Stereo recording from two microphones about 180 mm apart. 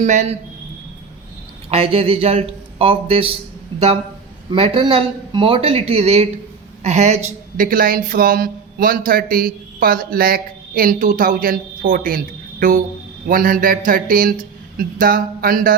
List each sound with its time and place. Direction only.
0.0 s speech: 40° right (ahead or behind)
1.7 s speech: 35° right (ahead or behind)
3.7 s a sound: 25° right (ahead or behind)
4.5 s speech: 30° right (ahead or behind); by 15.7 s 50° right (ahead or behind)